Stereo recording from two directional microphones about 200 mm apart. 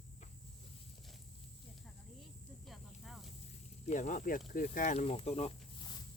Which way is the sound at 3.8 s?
40° left (ahead or behind).